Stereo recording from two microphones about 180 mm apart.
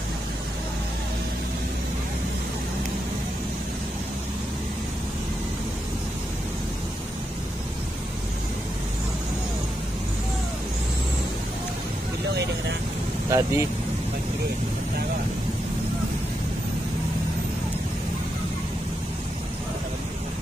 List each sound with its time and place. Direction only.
13.3 s speech: 15° right (ahead or behind)